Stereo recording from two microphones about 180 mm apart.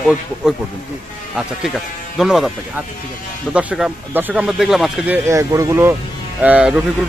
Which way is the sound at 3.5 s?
5° right (ahead or behind).